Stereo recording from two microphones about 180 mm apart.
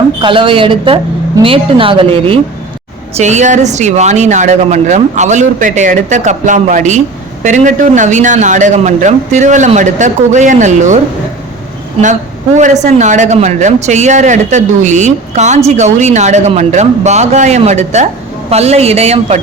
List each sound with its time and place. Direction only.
0.2 s a woman's voice: 30° right (ahead or behind)
12.5 s speech: 40° right (ahead or behind)